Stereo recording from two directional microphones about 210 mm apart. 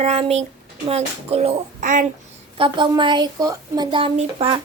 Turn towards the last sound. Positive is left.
turn(degrees=-25)  # may be behind; listen again after turning